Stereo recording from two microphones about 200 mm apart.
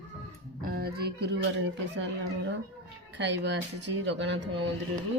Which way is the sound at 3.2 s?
60° right (ahead or behind).